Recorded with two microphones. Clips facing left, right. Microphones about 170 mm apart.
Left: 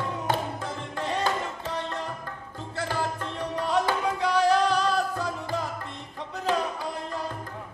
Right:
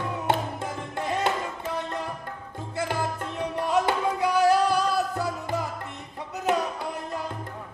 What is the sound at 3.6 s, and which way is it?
Music, 10° right (ahead or behind).